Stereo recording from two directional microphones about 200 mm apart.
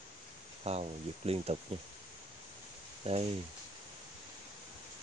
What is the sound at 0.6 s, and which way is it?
Speech, 30° right (ahead or behind).